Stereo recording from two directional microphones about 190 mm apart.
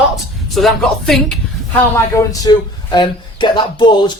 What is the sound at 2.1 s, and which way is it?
Speech, 20° left (ahead or behind).